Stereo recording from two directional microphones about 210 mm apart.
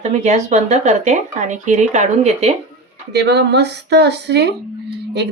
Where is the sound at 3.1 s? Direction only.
55° right (ahead or behind).